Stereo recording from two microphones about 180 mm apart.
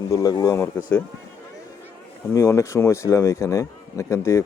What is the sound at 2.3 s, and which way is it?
Speech, 15° left (ahead or behind).